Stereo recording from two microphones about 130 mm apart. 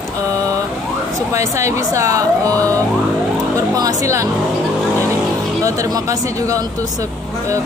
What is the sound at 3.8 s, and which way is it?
Speech, 25° right (ahead or behind).